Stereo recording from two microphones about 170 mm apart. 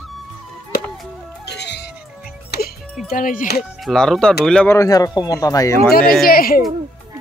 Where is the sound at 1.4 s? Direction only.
80° left.